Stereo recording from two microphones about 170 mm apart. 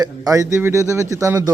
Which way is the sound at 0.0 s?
20° right (ahead or behind).